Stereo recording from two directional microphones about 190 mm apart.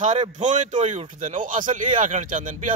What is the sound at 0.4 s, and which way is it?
Speech, 40° right (ahead or behind).